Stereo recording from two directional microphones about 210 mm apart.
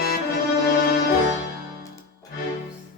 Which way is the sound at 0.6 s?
45° left (ahead or behind).